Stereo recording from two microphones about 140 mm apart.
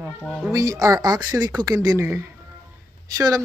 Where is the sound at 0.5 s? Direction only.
25° right (ahead or behind).